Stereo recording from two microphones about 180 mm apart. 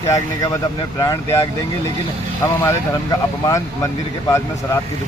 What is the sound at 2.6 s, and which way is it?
Speech, 20° left (ahead or behind).